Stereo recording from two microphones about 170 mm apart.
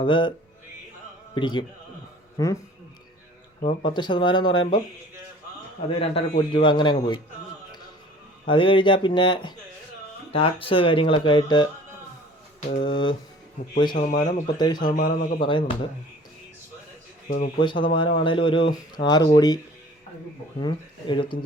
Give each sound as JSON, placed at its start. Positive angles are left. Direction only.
{"t": 0.0, "sound": "speech", "side_deg": 30}
{"t": 1.4, "sound": "speech", "side_deg": 25}
{"t": 3.8, "sound": "speech", "side_deg": 25}
{"t": 5.9, "sound": "speech", "side_deg": 35}
{"t": 8.4, "sound": "speech", "side_deg": 30}
{"t": 12.5, "sound": "a sound", "side_deg": 40}
{"t": 12.8, "sound": "speech", "side_deg": 30}
{"t": 13.9, "sound": "speech", "side_deg": 45}
{"t": 15.4, "sound": "speech", "side_deg": 30}
{"t": 17.2, "sound": "speech", "side_deg": 45}
{"t": 17.6, "sound": "speech", "side_deg": 30}
{"t": 20.6, "sound": "speech", "side_deg": 30}